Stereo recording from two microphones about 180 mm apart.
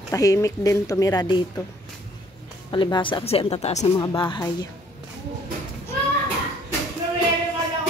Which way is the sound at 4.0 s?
25° left (ahead or behind).